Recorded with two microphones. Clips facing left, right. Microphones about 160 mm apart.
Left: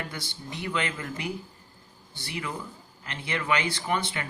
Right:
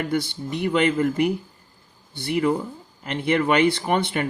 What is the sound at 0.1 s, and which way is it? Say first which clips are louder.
Speech: right 14 dB; 55° right (ahead or behind).